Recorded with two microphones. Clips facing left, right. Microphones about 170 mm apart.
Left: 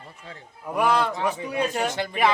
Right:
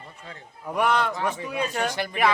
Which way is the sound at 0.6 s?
5° left (ahead or behind).